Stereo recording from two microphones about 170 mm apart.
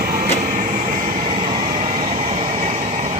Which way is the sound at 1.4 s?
35° right (ahead or behind).